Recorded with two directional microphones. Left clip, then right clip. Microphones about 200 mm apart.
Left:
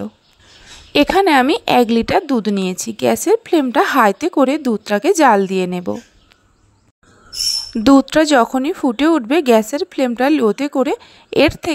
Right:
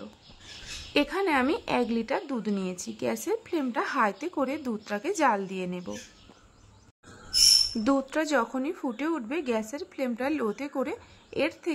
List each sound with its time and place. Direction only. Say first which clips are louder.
0.9 s a woman's voice: left 14 dB; 40° left (ahead or behind)
7.7 s a woman's voice: left 15 dB; 40° left (ahead or behind)